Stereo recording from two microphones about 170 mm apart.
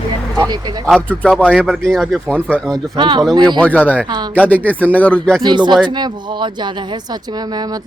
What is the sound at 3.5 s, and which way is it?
Speech, 10° left (ahead or behind).